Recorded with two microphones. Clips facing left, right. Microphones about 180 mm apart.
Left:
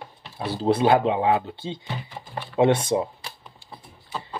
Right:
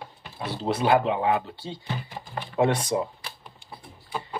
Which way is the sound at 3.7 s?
10° right (ahead or behind).